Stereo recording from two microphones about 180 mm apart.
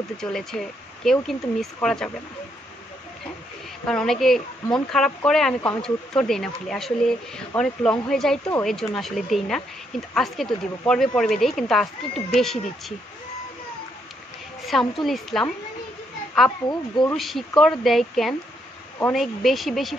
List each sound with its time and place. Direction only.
0.2 s speech: centre (ahead or behind)
3.8 s speech: 5° left (ahead or behind)
14.7 s speech: centre (ahead or behind)
16.6 s speech: 25° left (ahead or behind)
17.1 s speech: centre (ahead or behind)